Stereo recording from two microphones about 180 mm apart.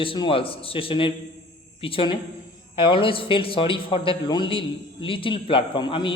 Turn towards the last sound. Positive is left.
turn(degrees=25)  # may be behind; listen again after turning